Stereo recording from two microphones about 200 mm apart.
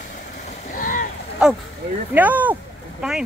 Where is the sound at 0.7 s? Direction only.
40° left (ahead or behind).